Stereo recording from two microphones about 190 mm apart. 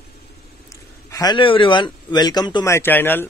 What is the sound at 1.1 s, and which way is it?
Speech, 20° left (ahead or behind).